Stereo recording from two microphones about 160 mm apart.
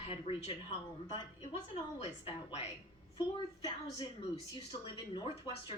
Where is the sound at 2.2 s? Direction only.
40° left (ahead or behind).